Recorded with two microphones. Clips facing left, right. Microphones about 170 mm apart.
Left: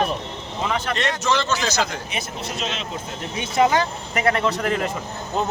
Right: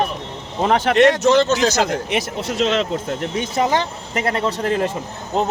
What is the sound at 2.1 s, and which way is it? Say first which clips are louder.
Speech: right 8 dB; 90° right.